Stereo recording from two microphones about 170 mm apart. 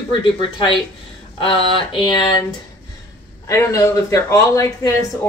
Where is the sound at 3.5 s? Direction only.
15° left (ahead or behind).